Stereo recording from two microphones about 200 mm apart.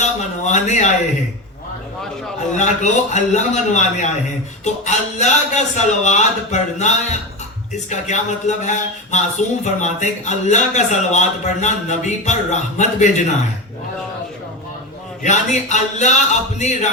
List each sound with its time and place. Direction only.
0.0 s speech: 35° left (ahead or behind)
2.6 s speech: 35° left (ahead or behind)
15.2 s speech: 35° left (ahead or behind)